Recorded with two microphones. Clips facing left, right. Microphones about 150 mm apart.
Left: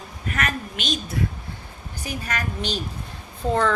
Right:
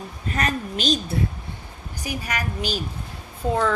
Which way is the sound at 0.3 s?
35° right (ahead or behind).